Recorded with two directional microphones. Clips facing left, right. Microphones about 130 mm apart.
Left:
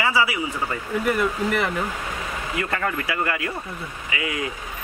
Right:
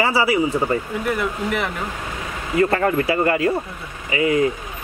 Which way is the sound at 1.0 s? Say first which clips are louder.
Left 2 dB; centre (ahead or behind).